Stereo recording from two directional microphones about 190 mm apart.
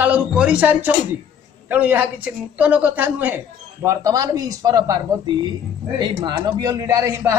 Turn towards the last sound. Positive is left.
turn(degrees=-15)  # may be behind; listen again after turning